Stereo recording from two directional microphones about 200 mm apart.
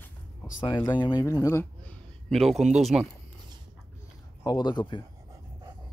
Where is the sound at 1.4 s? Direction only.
15° left (ahead or behind).